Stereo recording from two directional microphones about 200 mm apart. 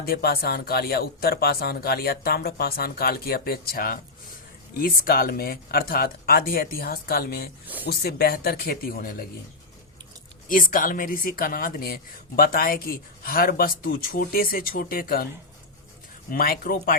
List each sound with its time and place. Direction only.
0.0 s speech: 50° left (ahead or behind)
10.5 s speech: 45° left (ahead or behind)
16.3 s speech: 45° left (ahead or behind)